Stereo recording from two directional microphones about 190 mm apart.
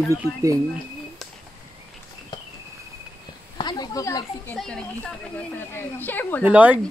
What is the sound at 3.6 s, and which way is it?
Snake, 20° left (ahead or behind).